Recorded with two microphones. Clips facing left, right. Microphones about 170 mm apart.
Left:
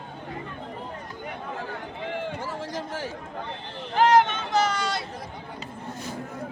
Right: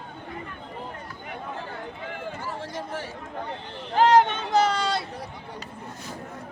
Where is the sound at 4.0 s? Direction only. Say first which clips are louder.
Right 1 dB; 35° right (ahead or behind).